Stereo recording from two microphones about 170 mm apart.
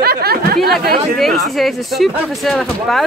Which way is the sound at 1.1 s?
Centre (ahead or behind).